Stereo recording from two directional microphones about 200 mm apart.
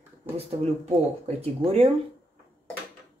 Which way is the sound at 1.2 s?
30° right (ahead or behind).